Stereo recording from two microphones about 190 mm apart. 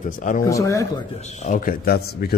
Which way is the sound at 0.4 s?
15° left (ahead or behind).